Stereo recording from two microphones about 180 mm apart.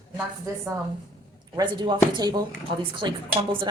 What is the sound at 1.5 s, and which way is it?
A woman's voice, 25° right (ahead or behind).